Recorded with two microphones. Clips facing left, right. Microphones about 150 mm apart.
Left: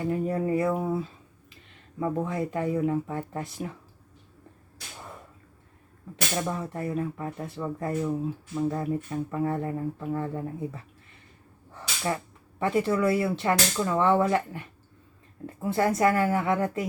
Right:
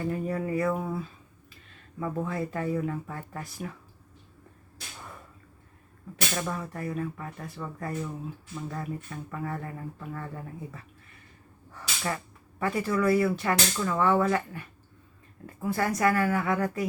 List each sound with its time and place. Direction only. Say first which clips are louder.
0.0 s speech: left 3 dB; 25° left (ahead or behind)
6.3 s speech: left 4 dB; 20° left (ahead or behind)